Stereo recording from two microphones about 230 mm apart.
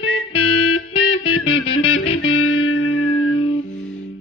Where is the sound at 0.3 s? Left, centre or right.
Left.